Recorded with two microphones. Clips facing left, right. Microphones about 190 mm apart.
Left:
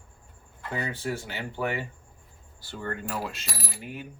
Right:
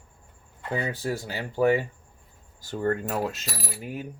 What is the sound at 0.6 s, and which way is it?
Speech, 15° right (ahead or behind).